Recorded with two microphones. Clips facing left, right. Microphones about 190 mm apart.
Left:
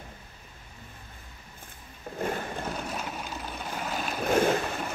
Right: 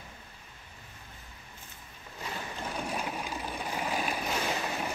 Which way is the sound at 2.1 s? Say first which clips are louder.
Left 8 dB; 55° left (ahead or behind).